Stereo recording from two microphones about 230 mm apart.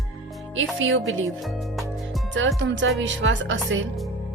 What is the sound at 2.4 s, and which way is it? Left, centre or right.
A woman's voice, right.